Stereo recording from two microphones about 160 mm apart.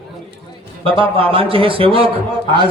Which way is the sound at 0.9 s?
35° right (ahead or behind).